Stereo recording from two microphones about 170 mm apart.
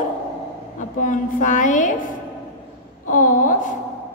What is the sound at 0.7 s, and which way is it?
A woman's voice, 50° left (ahead or behind).